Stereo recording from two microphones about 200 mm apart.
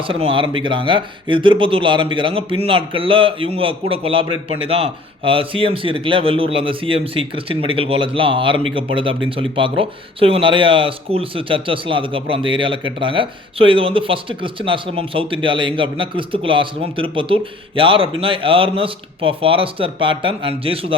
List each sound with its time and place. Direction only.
0.1 s speech: 25° right (ahead or behind)